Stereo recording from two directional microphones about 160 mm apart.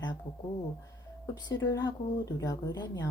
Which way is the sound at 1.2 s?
25° left (ahead or behind).